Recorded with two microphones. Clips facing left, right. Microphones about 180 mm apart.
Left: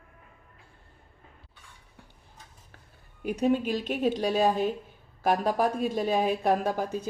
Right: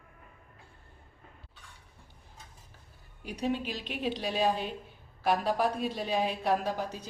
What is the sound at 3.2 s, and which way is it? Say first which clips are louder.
Speech: left 7 dB; 50° left (ahead or behind).